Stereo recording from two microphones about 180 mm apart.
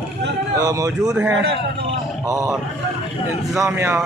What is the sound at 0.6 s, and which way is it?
Speech, 20° right (ahead or behind).